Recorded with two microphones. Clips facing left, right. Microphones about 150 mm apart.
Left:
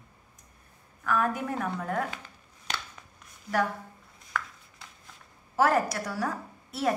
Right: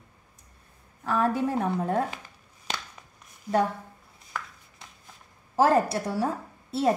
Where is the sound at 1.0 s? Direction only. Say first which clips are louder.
Right 3 dB; 30° right (ahead or behind).